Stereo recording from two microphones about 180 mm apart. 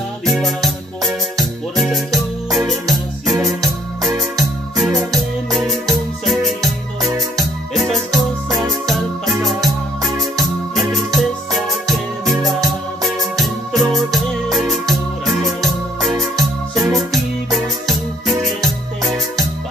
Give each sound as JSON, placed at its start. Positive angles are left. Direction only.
{"t": 0.3, "sound": "music", "side_deg": 0}
{"t": 5.1, "sound": "music", "side_deg": 0}
{"t": 7.7, "sound": "music", "side_deg": 0}
{"t": 10.8, "sound": "music", "side_deg": 0}
{"t": 13.4, "sound": "music", "side_deg": 0}
{"t": 16.1, "sound": "music", "side_deg": -20}